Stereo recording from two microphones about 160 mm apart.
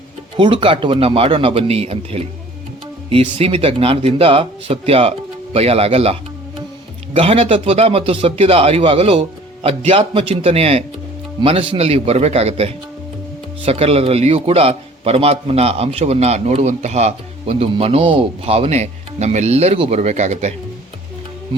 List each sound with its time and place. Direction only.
0.3 s a man's voice: 30° right (ahead or behind)